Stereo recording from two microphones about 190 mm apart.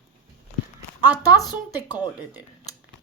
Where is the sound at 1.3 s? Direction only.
20° left (ahead or behind).